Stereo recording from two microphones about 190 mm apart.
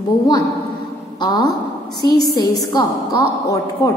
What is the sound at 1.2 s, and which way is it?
A woman's voice, 20° left (ahead or behind).